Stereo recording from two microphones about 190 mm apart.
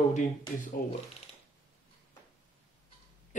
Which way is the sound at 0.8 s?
50° left (ahead or behind).